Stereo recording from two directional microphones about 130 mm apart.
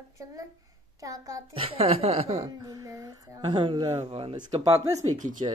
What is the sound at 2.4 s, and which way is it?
Speech, 30° right (ahead or behind).